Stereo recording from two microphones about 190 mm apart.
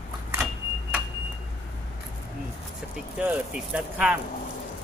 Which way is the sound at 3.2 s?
10° right (ahead or behind).